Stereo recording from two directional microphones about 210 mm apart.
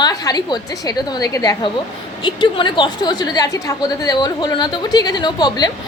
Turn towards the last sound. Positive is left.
turn(degrees=20)  # may be behind; listen again after turning